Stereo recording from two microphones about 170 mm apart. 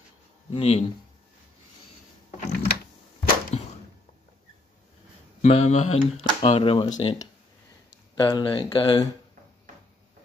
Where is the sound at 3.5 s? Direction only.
40° left (ahead or behind).